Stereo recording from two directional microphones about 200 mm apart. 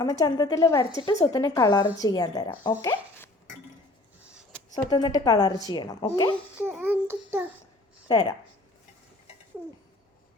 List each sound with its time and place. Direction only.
0.0 s a woman's voice: 15° left (ahead or behind)
4.7 s speech: 20° left (ahead or behind)
6.6 s a child's voice: 10° right (ahead or behind)